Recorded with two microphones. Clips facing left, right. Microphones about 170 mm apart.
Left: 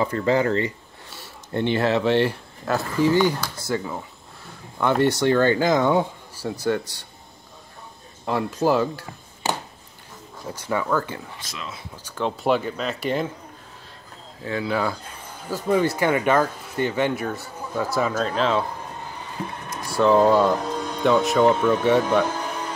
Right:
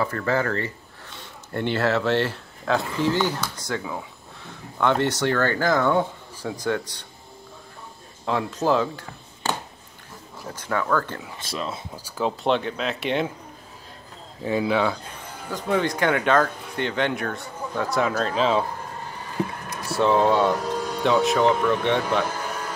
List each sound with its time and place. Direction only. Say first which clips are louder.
0.0 s speech: left 3 dB; 20° left (ahead or behind)
8.3 s speech: left 1 dB; 10° left (ahead or behind)
11.3 s speech: right 6 dB; 30° right (ahead or behind)
12.0 s speech: even; 5° right (ahead or behind)
12.4 s speech: left 2 dB; 5° left (ahead or behind)
14.4 s speech: right 4 dB; 20° right (ahead or behind)
14.7 s speech: right 2 dB; centre (ahead or behind)
19.9 s speech: left 3 dB; centre (ahead or behind)